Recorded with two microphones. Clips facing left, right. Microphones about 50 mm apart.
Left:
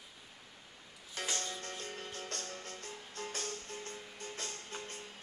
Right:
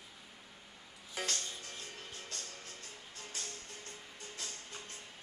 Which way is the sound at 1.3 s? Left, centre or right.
Left.